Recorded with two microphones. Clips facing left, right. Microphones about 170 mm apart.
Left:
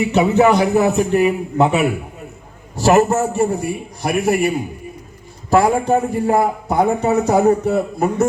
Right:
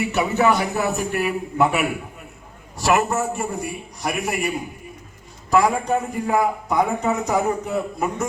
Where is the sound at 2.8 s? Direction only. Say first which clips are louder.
Left 6 dB; 45° left (ahead or behind).